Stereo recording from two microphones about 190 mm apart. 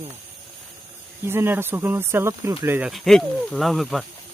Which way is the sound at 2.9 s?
Centre (ahead or behind).